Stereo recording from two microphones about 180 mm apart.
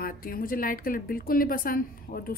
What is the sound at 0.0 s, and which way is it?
Speech, 55° left (ahead or behind).